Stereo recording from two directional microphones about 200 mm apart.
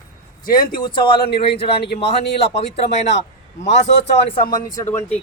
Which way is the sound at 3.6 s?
35° left (ahead or behind).